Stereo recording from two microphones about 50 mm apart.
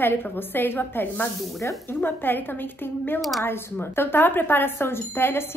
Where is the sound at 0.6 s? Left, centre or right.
Left.